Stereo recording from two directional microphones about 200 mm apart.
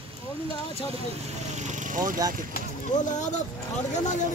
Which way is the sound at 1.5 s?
35° right (ahead or behind).